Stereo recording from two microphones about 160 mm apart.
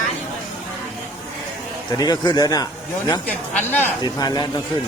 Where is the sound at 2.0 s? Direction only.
25° left (ahead or behind).